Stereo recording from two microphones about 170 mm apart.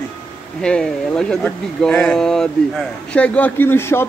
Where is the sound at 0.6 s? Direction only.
5° left (ahead or behind).